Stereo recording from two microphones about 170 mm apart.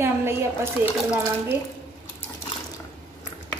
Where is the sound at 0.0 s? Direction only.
15° right (ahead or behind).